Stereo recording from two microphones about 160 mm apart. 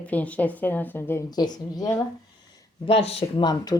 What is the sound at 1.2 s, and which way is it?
Speech, 25° left (ahead or behind).